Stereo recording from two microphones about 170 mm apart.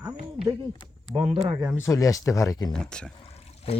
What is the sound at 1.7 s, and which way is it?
Speech, 15° left (ahead or behind).